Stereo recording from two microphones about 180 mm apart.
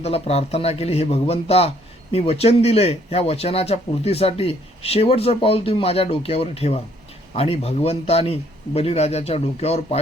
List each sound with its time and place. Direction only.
0.0 s speech: 35° left (ahead or behind)